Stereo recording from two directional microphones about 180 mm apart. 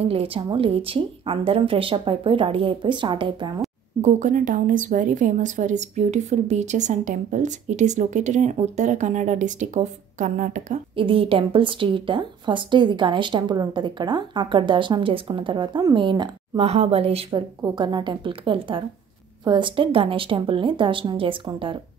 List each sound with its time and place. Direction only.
0.0 s a woman's voice: 30° right (ahead or behind)
4.0 s a woman's voice: 45° right (ahead or behind)
11.0 s a woman's voice: 30° right (ahead or behind)